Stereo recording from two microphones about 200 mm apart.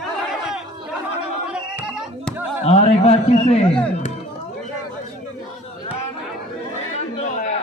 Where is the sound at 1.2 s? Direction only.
5° right (ahead or behind).